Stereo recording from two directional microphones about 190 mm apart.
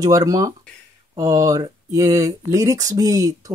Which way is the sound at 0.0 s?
20° right (ahead or behind).